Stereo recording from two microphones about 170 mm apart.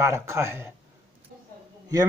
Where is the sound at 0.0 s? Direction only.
15° right (ahead or behind).